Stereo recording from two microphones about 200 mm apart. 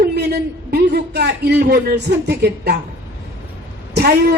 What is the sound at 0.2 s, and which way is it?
A man's voice, 55° right (ahead or behind).